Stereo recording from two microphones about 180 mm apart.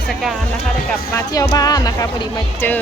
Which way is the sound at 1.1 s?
20° left (ahead or behind).